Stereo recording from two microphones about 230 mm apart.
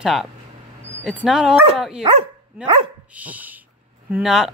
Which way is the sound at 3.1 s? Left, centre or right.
Centre.